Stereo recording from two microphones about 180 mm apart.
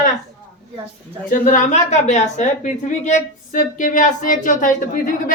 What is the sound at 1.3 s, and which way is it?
A woman's voice, 45° left (ahead or behind).